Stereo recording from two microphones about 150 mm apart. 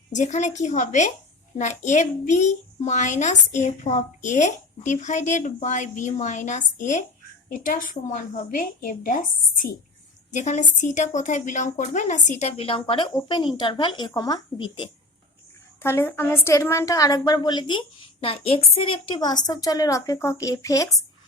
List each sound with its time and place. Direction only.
0.1 s a child's voice: 55° left (ahead or behind)
10.3 s a child's voice: 55° left (ahead or behind); by 14.8 s 30° left (ahead or behind)
15.8 s a woman's voice: 15° left (ahead or behind)